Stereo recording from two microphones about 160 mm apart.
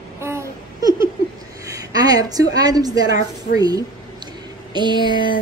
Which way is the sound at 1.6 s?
20° right (ahead or behind).